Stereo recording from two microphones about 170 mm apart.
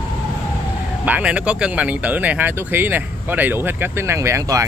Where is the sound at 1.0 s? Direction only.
10° right (ahead or behind).